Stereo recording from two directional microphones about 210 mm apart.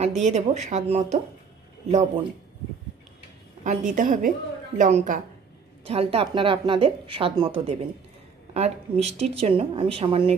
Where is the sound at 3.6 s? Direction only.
35° right (ahead or behind).